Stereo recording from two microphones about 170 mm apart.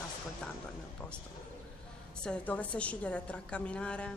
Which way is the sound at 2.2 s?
5° left (ahead or behind).